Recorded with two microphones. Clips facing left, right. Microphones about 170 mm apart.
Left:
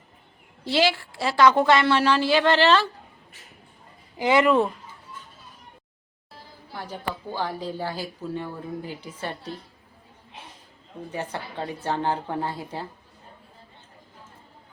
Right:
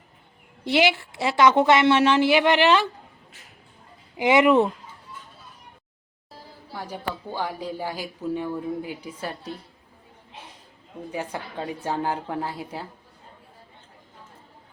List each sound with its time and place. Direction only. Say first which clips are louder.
0.6 s a woman's voice: right 1 dB; 20° right (ahead or behind)
4.2 s a woman's voice: right 2 dB; 20° right (ahead or behind)
6.7 s speech: right 1 dB; 15° right (ahead or behind)
11.1 s speech: right 1 dB; 10° right (ahead or behind)